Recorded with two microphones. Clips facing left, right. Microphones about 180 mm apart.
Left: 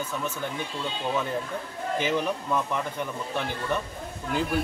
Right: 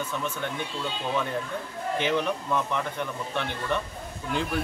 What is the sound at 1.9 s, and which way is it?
Speech, 10° left (ahead or behind).